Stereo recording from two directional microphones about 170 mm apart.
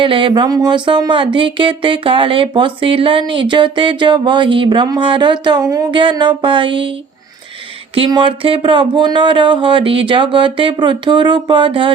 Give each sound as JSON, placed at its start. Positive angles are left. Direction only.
{"t": 0.0, "sound": "speech", "side_deg": -30}
{"t": 7.9, "sound": "speech", "side_deg": -30}